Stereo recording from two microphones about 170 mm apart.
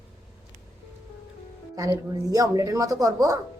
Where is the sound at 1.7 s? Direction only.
20° right (ahead or behind).